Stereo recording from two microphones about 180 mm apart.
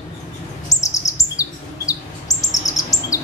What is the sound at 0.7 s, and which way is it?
Chirp, 15° left (ahead or behind).